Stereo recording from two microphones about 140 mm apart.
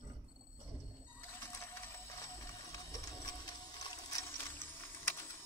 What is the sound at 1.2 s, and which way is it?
Printer, 20° left (ahead or behind).